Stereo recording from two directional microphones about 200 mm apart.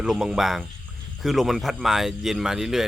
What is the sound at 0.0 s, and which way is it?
Speech, 5° right (ahead or behind).